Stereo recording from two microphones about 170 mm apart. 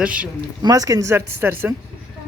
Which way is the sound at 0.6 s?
20° right (ahead or behind).